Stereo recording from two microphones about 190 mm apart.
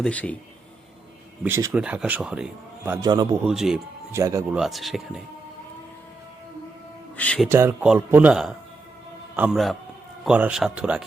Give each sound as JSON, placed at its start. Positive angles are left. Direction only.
{"t": 0.0, "sound": "a man's voice", "side_deg": 5}
{"t": 1.5, "sound": "a man's voice", "side_deg": -15}
{"t": 3.1, "sound": "a man's voice", "side_deg": -20}
{"t": 3.4, "sound": "speech", "side_deg": -5}
{"t": 4.1, "sound": "a man's voice", "side_deg": -15}
{"t": 4.5, "sound": "speech", "side_deg": 0}
{"t": 7.2, "sound": "a man's voice", "side_deg": 5}
{"t": 7.4, "sound": "a man's voice", "side_deg": -10}